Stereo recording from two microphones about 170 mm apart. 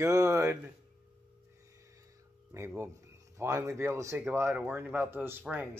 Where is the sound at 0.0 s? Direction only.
15° right (ahead or behind).